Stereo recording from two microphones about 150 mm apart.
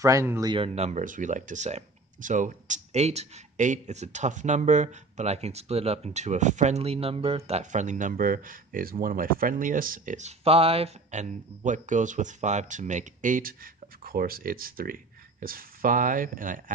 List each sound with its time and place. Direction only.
0.0 s speech: 20° right (ahead or behind)
0.7 s speech: 50° right (ahead or behind); by 13.6 s 65° right (ahead or behind)
14.0 s speech: 75° right (ahead or behind)